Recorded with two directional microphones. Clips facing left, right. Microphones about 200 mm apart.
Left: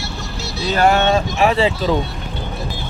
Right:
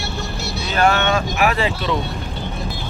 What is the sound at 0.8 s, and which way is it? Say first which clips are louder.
Speech: left 3 dB; 30° left (ahead or behind).